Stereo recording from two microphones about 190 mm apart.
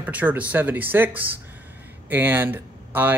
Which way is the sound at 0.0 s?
10° right (ahead or behind).